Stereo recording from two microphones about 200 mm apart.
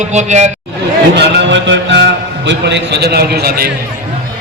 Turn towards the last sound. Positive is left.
turn(degrees=-50)  # may be behind; listen again after turning